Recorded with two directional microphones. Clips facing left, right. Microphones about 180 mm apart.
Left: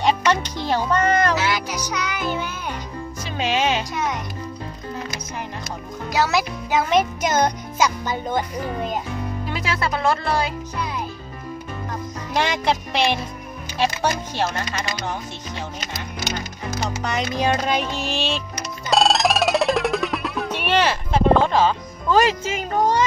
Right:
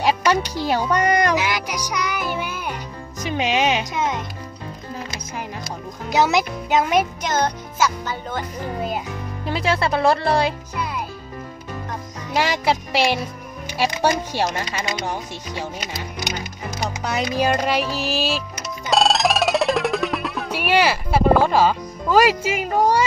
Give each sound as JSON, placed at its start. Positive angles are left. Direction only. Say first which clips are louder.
{"t": 0.0, "sound": "a child's voice", "louder": "right 1 dB", "side_deg": -10}
{"t": 6.1, "sound": "music", "louder": "right 3 dB", "side_deg": -20}
{"t": 7.2, "sound": "a child's voice", "louder": "left 2 dB", "side_deg": 10}
{"t": 9.5, "sound": "speech", "louder": "right 6 dB", "side_deg": -30}
{"t": 12.4, "sound": "a child's voice", "louder": "right 1 dB", "side_deg": -5}
{"t": 16.8, "sound": "speech", "louder": "right 1 dB", "side_deg": -10}
{"t": 18.9, "sound": "music", "louder": "even", "side_deg": 0}